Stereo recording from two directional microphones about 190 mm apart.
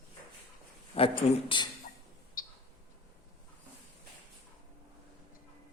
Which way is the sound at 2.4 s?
50° left (ahead or behind).